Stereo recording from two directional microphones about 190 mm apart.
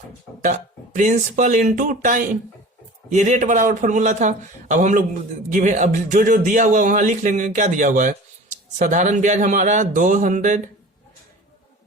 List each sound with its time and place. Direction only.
0.9 s a man's voice: 40° right (ahead or behind)